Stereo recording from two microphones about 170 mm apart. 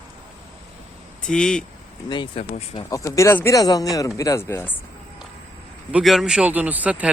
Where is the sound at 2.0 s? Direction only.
30° left (ahead or behind).